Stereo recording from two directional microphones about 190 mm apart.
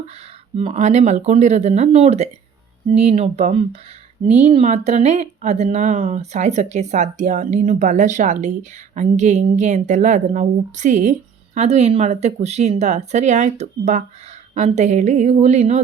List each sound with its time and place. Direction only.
0.5 s speech: 30° right (ahead or behind)